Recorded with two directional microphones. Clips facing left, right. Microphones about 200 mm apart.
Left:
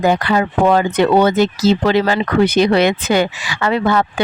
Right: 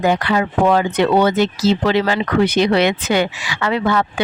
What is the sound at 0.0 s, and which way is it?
Speech, 40° left (ahead or behind).